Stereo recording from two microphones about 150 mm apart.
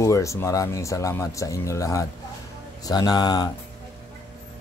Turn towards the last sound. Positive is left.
turn(degrees=25)  # may be behind; listen again after turning